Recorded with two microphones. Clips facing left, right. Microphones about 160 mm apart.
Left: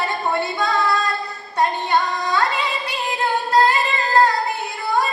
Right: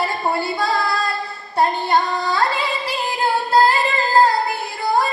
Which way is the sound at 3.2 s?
30° right (ahead or behind).